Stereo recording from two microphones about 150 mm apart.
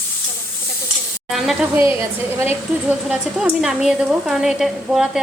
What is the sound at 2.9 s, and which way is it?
A woman's voice, 5° right (ahead or behind).